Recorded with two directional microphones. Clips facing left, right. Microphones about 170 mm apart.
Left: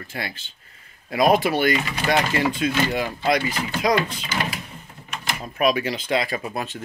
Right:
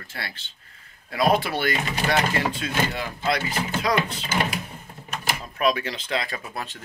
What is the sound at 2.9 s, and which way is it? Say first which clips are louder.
Speech: left 4 dB; 15° left (ahead or behind).